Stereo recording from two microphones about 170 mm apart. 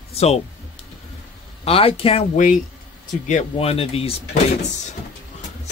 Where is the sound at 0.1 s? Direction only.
40° left (ahead or behind).